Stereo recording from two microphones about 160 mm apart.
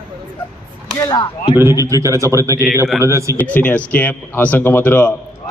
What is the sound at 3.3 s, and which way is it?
A man's voice, 10° left (ahead or behind).